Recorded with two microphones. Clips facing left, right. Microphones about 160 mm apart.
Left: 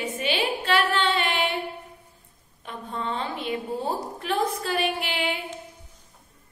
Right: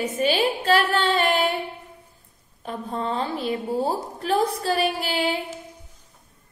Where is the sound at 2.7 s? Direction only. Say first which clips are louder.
Right 4 dB; 35° right (ahead or behind).